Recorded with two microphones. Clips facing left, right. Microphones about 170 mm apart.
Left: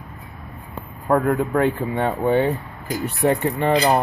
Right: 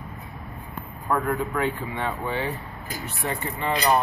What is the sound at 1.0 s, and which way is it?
Speech, 45° left (ahead or behind).